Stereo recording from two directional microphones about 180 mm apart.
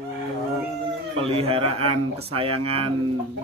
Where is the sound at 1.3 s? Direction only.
35° right (ahead or behind).